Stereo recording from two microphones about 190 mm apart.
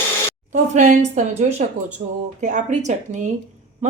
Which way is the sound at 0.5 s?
40° right (ahead or behind).